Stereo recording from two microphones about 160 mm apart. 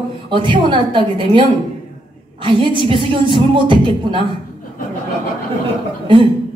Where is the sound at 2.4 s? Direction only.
30° right (ahead or behind).